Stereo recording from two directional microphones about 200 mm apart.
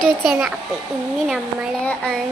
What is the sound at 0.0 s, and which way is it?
Child singing, centre (ahead or behind).